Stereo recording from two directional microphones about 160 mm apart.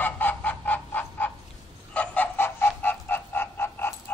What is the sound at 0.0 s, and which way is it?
Goose, 10° left (ahead or behind).